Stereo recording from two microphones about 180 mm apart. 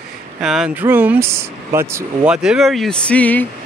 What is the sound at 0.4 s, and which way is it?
Speech, 5° right (ahead or behind).